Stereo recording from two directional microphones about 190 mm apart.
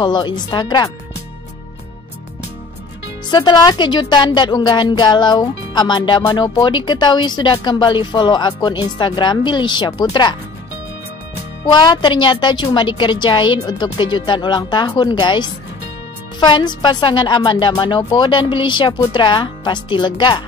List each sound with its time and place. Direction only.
0.0 s a woman's voice: 25° left (ahead or behind)
3.3 s a woman's voice: 20° left (ahead or behind)
11.6 s a woman's voice: 25° left (ahead or behind)